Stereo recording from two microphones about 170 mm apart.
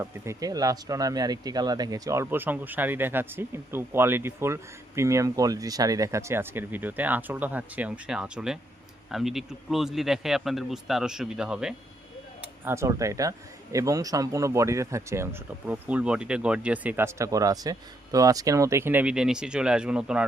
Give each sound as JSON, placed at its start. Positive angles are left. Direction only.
{"t": 0.0, "sound": "speech", "side_deg": -20}
{"t": 12.6, "sound": "speech", "side_deg": -15}